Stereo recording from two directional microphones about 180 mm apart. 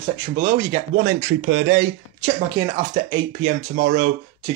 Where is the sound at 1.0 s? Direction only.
90° right.